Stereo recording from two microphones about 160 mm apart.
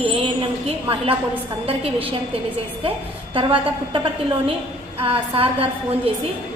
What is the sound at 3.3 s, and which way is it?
Speech, 35° right (ahead or behind).